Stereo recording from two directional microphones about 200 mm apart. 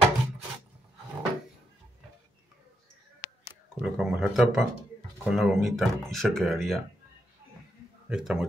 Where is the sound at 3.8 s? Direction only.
Centre (ahead or behind).